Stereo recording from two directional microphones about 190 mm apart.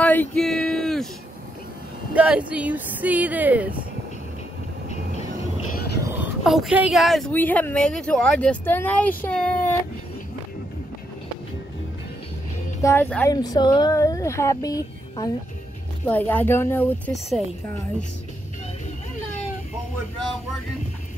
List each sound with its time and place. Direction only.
0.0 s a sound: 5° left (ahead or behind)
2.1 s speech: 5° right (ahead or behind)
6.1 s speech: centre (ahead or behind)
12.8 s speech: 10° left (ahead or behind)